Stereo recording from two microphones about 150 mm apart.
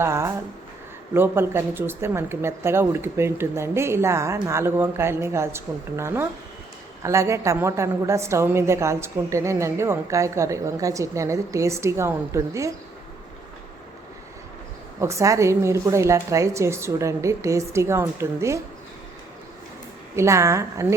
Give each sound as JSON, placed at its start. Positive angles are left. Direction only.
{"t": 0.0, "sound": "a woman's voice", "side_deg": -20}
{"t": 15.0, "sound": "a woman's voice", "side_deg": -20}
{"t": 20.1, "sound": "a woman's voice", "side_deg": -20}